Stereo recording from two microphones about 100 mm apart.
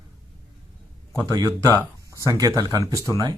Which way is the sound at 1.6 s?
35° left (ahead or behind).